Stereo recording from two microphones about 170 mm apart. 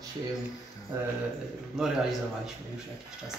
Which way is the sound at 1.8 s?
Centre (ahead or behind).